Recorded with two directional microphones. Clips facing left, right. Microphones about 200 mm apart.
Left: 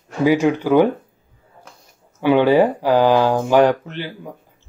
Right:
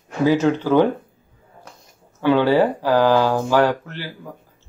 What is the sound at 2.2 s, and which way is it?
Speech, 15° left (ahead or behind).